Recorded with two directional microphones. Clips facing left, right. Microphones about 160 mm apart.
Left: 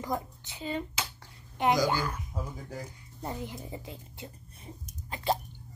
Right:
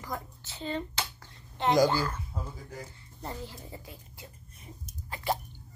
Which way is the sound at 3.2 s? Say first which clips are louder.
Left 3 dB; 15° left (ahead or behind).